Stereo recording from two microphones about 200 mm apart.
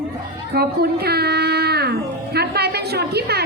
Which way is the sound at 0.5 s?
50° right (ahead or behind).